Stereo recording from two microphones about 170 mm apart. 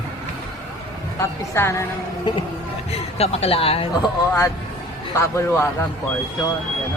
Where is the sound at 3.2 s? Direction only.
35° left (ahead or behind).